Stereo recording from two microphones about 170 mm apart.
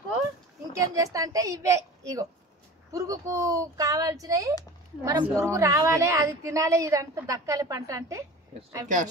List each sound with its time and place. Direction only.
0.7 s a woman's voice: 20° right (ahead or behind)
8.8 s speech: 50° right (ahead or behind)